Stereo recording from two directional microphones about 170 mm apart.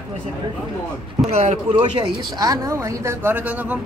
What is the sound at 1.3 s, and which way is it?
Speech, 40° right (ahead or behind).